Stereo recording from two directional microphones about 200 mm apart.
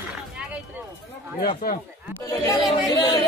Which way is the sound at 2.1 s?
15° left (ahead or behind).